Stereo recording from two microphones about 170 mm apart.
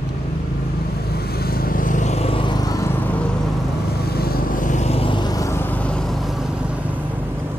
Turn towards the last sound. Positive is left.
turn(degrees=5)  # may be behind; listen again after turning